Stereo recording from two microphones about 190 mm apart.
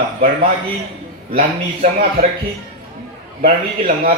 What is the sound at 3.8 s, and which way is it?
Speech, 50° right (ahead or behind).